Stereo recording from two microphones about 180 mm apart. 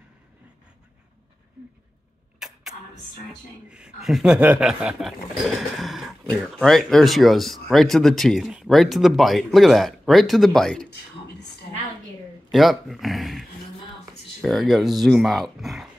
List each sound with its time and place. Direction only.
2.3 s a sound: 5° right (ahead or behind)
3.7 s speech: 5° right (ahead or behind)
12.4 s speech: centre (ahead or behind)